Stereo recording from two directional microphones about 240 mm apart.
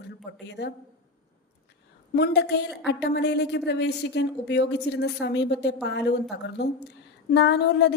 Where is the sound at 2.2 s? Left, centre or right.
Left.